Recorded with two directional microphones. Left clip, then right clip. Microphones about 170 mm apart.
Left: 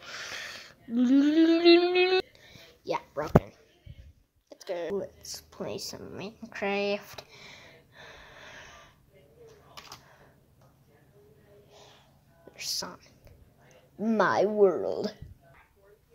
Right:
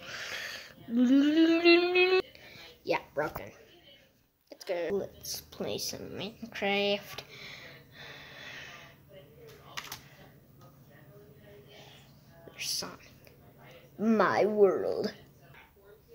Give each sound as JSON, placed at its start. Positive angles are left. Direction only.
{"t": 0.0, "sound": "a sound", "side_deg": 20}
{"t": 11.7, "sound": "music", "side_deg": 20}
{"t": 12.5, "sound": "whispering", "side_deg": 25}
{"t": 14.1, "sound": "speech", "side_deg": 20}